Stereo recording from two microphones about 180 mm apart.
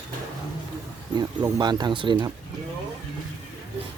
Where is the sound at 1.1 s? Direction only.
20° right (ahead or behind).